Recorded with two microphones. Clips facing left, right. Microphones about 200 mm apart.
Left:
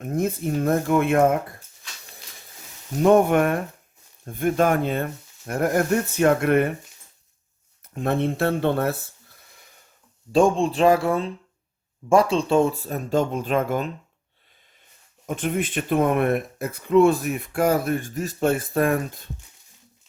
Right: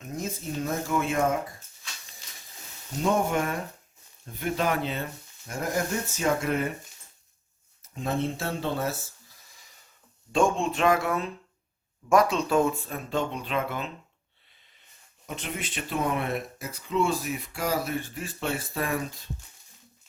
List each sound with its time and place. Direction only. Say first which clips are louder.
0.0 s speech: left 9 dB; 55° left (ahead or behind)
3.0 s speech: left 9 dB; 60° left (ahead or behind)
4.3 s speech: left 7 dB; 50° left (ahead or behind)
7.9 s speech: left 6 dB; 60° left (ahead or behind)
10.3 s speech: left 6 dB; 35° left (ahead or behind)
15.3 s speech: left 10 dB; 50° left (ahead or behind)